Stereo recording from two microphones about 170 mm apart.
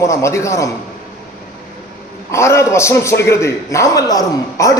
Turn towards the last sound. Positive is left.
turn(degrees=20)  # may be behind; listen again after turning